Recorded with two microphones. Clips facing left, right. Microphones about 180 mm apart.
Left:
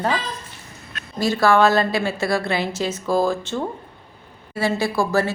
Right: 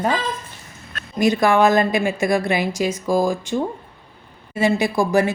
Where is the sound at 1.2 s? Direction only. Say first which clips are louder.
Right 1 dB; 15° right (ahead or behind).